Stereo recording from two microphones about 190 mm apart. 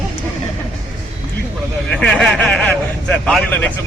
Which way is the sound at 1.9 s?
5° left (ahead or behind).